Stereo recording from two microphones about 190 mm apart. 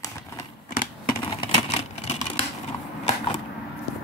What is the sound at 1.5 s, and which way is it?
Vehicle, 35° left (ahead or behind).